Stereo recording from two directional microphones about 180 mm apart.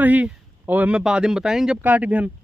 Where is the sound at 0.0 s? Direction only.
10° right (ahead or behind).